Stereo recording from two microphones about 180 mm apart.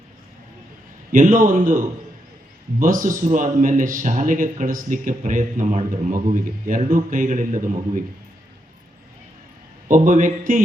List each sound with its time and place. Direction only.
1.1 s speech: 50° right (ahead or behind)
9.9 s speech: 45° right (ahead or behind)